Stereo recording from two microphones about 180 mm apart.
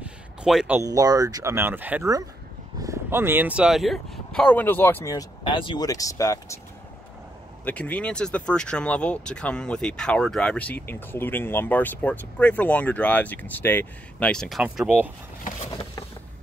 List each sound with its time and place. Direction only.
0.0 s a sound: 5° right (ahead or behind)
0.7 s speech: 20° right (ahead or behind); by 6.6 s 20° left (ahead or behind)
7.6 s speech: 10° left (ahead or behind); by 15.0 s 5° right (ahead or behind)